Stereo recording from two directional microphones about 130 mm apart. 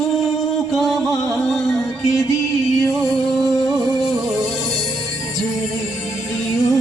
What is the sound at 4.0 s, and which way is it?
Music, centre (ahead or behind).